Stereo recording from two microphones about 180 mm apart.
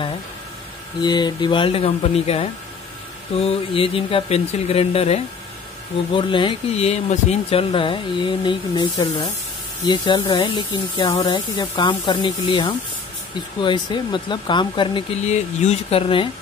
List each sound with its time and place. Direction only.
1.0 s speech: 25° left (ahead or behind)
15.2 s speech: 40° left (ahead or behind)